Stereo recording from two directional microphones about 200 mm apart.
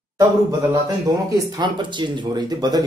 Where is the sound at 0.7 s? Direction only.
15° right (ahead or behind).